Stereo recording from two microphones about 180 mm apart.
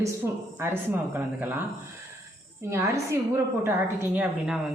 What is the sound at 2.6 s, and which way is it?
A man's voice, 15° right (ahead or behind).